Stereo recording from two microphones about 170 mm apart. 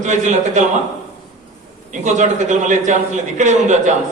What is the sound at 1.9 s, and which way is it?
A man's voice, 45° right (ahead or behind).